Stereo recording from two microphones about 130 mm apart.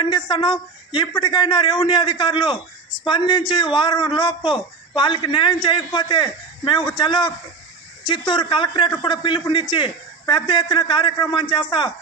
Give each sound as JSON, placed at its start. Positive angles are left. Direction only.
{"t": 0.0, "sound": "a man's voice", "side_deg": 40}